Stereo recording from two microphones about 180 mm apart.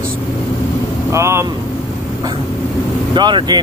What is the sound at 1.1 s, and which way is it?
Speech, 15° right (ahead or behind).